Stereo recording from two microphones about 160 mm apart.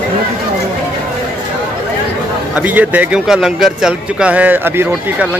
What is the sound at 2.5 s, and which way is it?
Speech, 10° right (ahead or behind).